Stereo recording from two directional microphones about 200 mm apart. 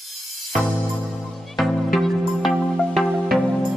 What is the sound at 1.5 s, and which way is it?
Music, centre (ahead or behind).